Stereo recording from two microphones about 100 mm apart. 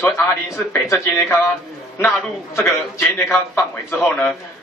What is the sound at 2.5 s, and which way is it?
A man's voice, 25° left (ahead or behind).